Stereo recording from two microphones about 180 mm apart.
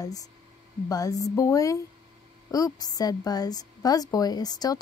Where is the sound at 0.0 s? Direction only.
20° left (ahead or behind).